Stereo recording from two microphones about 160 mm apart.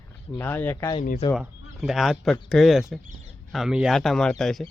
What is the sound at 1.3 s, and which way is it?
Speech, 5° right (ahead or behind).